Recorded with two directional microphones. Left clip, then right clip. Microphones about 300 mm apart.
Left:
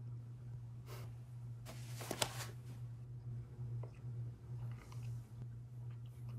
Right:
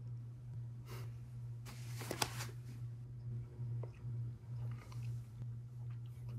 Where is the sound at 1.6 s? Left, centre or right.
Centre.